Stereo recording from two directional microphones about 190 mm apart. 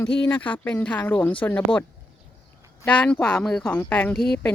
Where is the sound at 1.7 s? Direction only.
25° left (ahead or behind).